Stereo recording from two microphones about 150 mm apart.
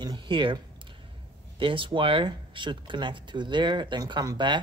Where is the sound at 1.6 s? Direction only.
35° right (ahead or behind).